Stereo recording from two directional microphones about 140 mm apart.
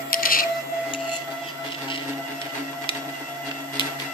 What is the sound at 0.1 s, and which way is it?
Music, 90° left.